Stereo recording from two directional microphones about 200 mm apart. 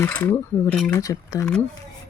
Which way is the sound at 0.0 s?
10° left (ahead or behind).